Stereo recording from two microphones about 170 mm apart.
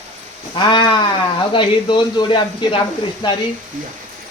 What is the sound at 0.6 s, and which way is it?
Speech, 30° left (ahead or behind).